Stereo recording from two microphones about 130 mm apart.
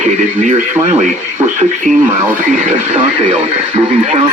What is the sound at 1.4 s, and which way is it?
Speech, 65° right (ahead or behind).